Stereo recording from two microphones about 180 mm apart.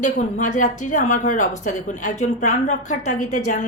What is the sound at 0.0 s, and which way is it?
Speech, 45° left (ahead or behind).